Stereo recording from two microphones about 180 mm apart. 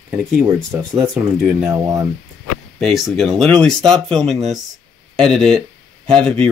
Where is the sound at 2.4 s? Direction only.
Centre (ahead or behind).